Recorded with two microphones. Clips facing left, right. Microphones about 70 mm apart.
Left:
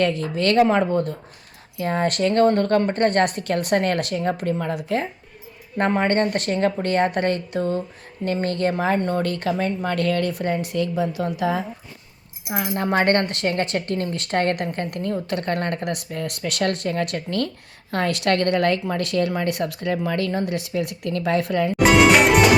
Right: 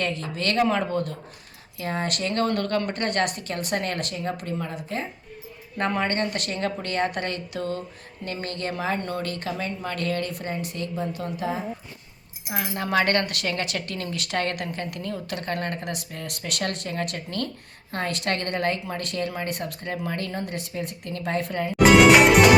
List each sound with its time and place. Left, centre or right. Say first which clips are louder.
0.2 s speech: left 6 dB; left
0.9 s speech: left 5 dB; left
5.7 s speech: left 5 dB; left
11.3 s a woman's voice: left 6 dB; left
12.5 s speech: left 3 dB; left
21.8 s music: right 1 dB; centre